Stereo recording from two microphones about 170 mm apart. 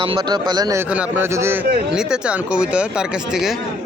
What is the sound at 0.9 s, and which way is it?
Speech, 10° right (ahead or behind).